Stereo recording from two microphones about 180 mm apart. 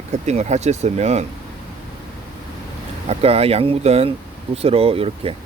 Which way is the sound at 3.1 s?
35° right (ahead or behind).